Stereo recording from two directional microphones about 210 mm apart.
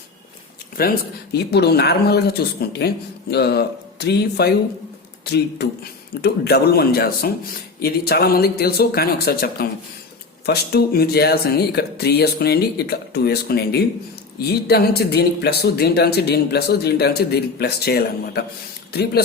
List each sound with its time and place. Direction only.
0.8 s speech: 50° left (ahead or behind)